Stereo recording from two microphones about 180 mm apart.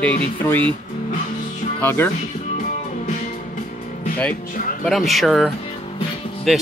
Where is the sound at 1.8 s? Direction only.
10° left (ahead or behind).